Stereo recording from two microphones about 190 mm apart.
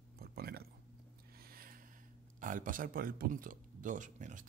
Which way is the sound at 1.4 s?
50° right (ahead or behind).